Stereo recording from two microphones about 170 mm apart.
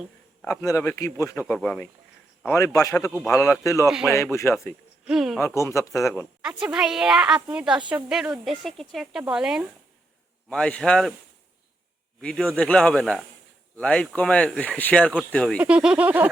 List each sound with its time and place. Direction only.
0.4 s speech: 20° left (ahead or behind)
1.5 s a woman's voice: 5° left (ahead or behind)
3.8 s a woman's voice: 5° right (ahead or behind)
4.1 s speech: 15° left (ahead or behind)
5.0 s a woman's voice: centre (ahead or behind)
5.4 s speech: 15° left (ahead or behind)
6.6 s a woman's voice: 5° right (ahead or behind)
10.5 s a woman's voice: 5° left (ahead or behind)
12.2 s a woman's voice: 5° left (ahead or behind)
15.6 s speech: 5° right (ahead or behind)